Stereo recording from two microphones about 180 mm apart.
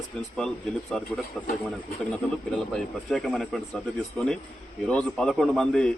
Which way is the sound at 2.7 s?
5° left (ahead or behind).